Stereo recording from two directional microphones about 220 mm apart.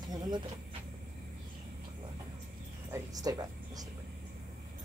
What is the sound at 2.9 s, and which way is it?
Music, 15° right (ahead or behind).